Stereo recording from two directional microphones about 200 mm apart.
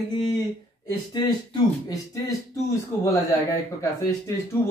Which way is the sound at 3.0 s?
15° left (ahead or behind).